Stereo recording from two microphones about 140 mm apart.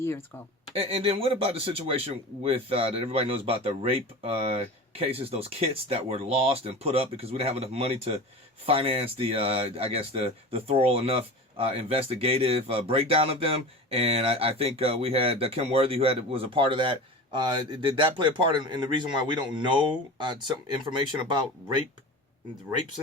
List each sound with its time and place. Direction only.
0.7 s speech: 45° right (ahead or behind)